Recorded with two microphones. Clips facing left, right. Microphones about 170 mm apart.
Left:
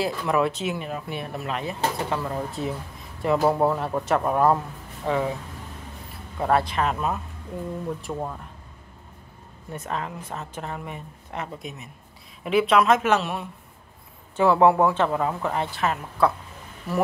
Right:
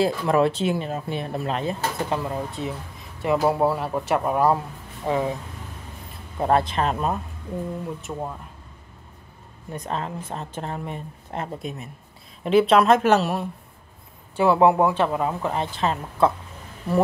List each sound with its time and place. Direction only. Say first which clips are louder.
0.0 s speech: right 4 dB; 30° right (ahead or behind)
2.0 s speech: right 1 dB; 15° right (ahead or behind)
2.3 s speech: even; centre (ahead or behind)
5.0 s speech: right 1 dB; 15° right (ahead or behind)
6.4 s speech: right 1 dB; 25° right (ahead or behind)
8.0 s speech: even; centre (ahead or behind)
9.7 s speech: right 2 dB; 25° right (ahead or behind)
14.3 s speech: even; 15° right (ahead or behind)